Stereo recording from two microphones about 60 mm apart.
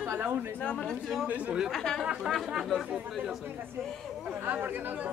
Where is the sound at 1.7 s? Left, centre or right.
Centre.